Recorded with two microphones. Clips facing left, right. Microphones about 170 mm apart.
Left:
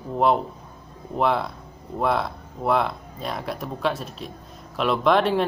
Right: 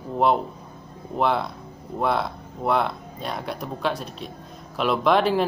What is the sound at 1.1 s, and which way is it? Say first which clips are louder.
Speech: even; centre (ahead or behind).